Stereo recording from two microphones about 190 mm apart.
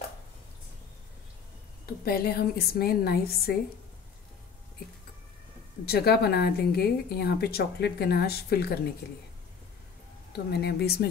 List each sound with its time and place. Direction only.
2.0 s a woman's voice: 55° left (ahead or behind)
5.9 s a woman's voice: 55° left (ahead or behind)
10.3 s a woman's voice: 60° left (ahead or behind)